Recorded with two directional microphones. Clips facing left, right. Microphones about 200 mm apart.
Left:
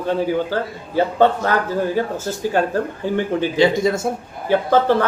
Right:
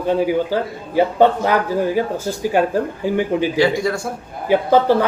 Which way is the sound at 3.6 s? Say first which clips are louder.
Left 5 dB; 20° left (ahead or behind).